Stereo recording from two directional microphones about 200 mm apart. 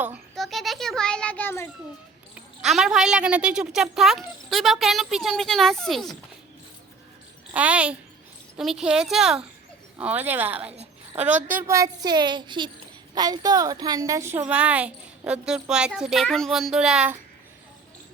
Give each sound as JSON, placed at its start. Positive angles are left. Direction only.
{"t": 0.0, "sound": "a sound", "side_deg": -5}
{"t": 2.3, "sound": "a woman's voice", "side_deg": 0}
{"t": 7.5, "sound": "a woman's voice", "side_deg": -5}
{"t": 10.7, "sound": "babbling", "side_deg": -30}
{"t": 11.2, "sound": "a woman's voice", "side_deg": -10}